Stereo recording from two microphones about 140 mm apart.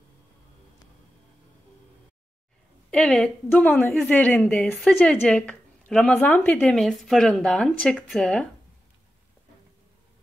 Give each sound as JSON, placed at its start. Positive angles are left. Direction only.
{"t": 2.9, "sound": "a woman's voice", "side_deg": 5}